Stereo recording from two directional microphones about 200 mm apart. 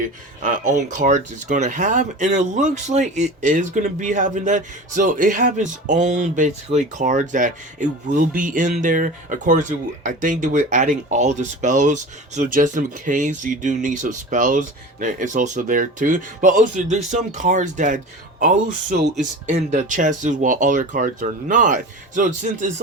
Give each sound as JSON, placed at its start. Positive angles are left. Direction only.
{"t": 0.4, "sound": "speech", "side_deg": -40}